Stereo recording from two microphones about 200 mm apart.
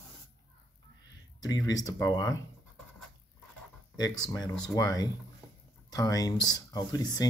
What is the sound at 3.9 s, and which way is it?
Speech, 20° left (ahead or behind).